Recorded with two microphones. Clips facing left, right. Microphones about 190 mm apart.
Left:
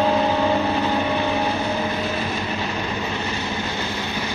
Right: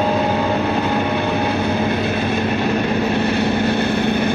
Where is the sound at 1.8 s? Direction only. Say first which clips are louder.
Right 5 dB; 60° right (ahead or behind).